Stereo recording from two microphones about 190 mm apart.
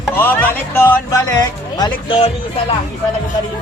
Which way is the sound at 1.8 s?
25° left (ahead or behind).